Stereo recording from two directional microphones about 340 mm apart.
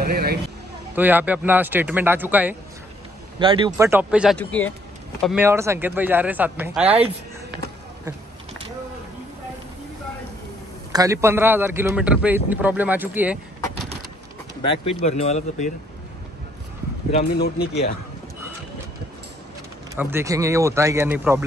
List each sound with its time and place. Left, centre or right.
0.0 s vehicle: right
0.9 s a man's voice: centre
10.9 s a man's voice: centre
14.6 s speech: centre
17.1 s speech: left
20.0 s speech: centre